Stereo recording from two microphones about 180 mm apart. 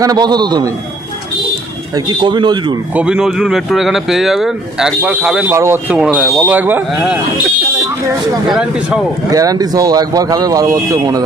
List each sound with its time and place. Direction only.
0.0 s speech: 20° right (ahead or behind)
2.0 s speech: 25° right (ahead or behind)
2.9 s speech: 5° right (ahead or behind)
8.5 s speech: 5° right (ahead or behind)
9.3 s speech: 20° right (ahead or behind)